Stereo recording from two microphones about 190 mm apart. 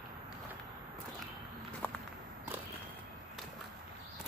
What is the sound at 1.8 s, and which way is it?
Walk, 10° left (ahead or behind).